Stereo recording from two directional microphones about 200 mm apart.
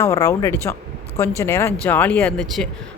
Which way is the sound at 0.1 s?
15° left (ahead or behind).